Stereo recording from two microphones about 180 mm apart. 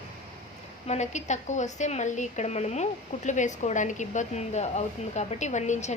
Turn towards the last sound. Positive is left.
turn(degrees=40)  # may be behind; listen again after turning